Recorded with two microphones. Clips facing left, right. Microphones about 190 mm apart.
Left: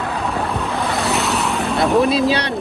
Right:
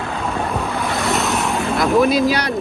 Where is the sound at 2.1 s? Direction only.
30° left (ahead or behind).